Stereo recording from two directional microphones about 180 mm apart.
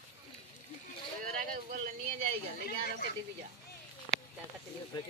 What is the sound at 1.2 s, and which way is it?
Speech, 45° right (ahead or behind).